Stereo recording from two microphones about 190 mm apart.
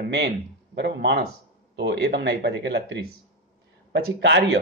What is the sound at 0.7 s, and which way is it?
A man's voice, 65° right (ahead or behind).